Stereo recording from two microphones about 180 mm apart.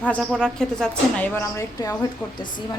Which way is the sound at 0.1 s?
5° left (ahead or behind).